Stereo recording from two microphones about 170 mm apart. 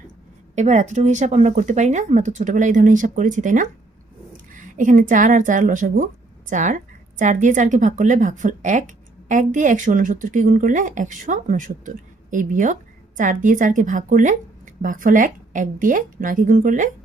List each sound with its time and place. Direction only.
0.5 s a woman's voice: 45° right (ahead or behind)